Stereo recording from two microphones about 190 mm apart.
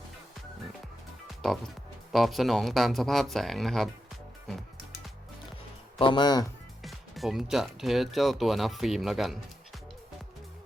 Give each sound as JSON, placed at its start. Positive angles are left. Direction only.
{"t": 2.1, "sound": "speech", "side_deg": 0}
{"t": 6.0, "sound": "speech", "side_deg": 25}
{"t": 6.8, "sound": "speech", "side_deg": 0}